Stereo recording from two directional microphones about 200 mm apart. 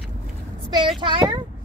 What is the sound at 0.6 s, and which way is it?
Speech, 25° right (ahead or behind).